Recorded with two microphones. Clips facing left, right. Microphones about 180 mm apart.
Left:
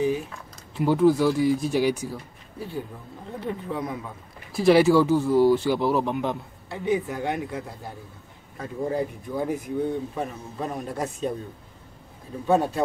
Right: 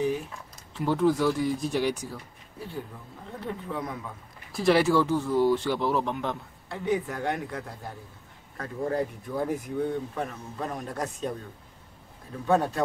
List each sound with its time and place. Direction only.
0.7 s speech: 10° left (ahead or behind)
3.3 s speech: 5° left (ahead or behind)
12.4 s speech: 10° left (ahead or behind)